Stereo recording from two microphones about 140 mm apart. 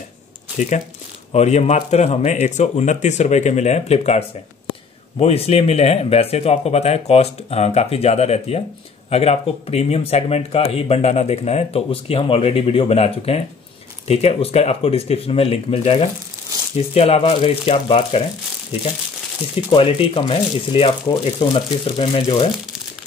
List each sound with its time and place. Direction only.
0.6 s speech: 60° left (ahead or behind)
5.2 s speech: 45° left (ahead or behind)
19.5 s speech: 40° left (ahead or behind)